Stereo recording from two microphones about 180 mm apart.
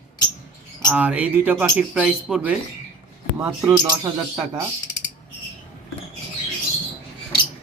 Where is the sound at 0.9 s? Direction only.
10° right (ahead or behind).